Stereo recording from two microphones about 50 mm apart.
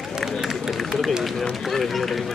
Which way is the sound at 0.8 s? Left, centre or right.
Centre.